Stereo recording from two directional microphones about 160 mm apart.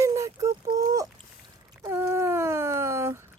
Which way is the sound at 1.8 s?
15° right (ahead or behind).